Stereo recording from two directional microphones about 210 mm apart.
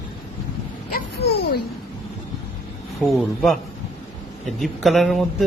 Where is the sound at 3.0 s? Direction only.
Centre (ahead or behind).